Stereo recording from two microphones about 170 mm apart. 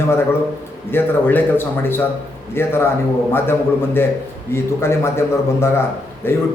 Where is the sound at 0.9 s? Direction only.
10° left (ahead or behind).